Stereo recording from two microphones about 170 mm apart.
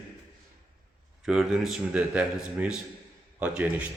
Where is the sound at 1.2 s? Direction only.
5° right (ahead or behind).